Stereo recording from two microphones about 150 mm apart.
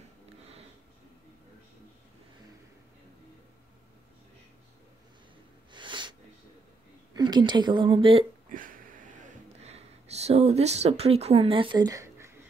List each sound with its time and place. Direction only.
5.7 s sneeze: 30° right (ahead or behind)
7.2 s speech: 30° right (ahead or behind)
8.5 s a sound: 65° right (ahead or behind); by 12.4 s 20° right (ahead or behind)